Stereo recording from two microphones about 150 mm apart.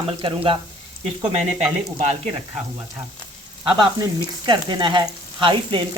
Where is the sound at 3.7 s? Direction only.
30° right (ahead or behind).